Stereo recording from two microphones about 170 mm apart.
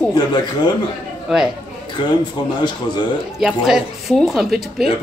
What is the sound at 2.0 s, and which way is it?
Speech, 25° left (ahead or behind).